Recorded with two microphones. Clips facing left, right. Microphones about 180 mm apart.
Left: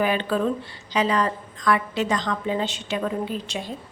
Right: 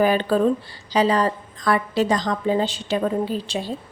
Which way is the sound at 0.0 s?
40° right (ahead or behind).